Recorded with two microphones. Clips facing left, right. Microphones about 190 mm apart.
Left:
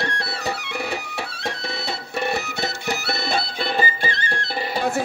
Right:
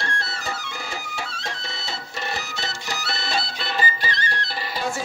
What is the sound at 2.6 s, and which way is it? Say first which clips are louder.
Music: left 5 dB; 55° left (ahead or behind).